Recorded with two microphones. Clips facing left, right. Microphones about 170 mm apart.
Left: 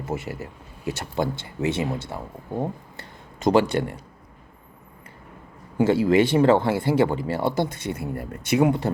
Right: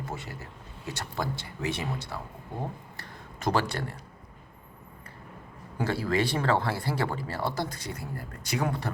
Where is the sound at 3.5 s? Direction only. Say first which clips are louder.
Left 9 dB; 20° left (ahead or behind).